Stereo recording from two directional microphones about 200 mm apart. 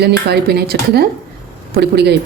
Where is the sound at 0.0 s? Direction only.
55° right (ahead or behind).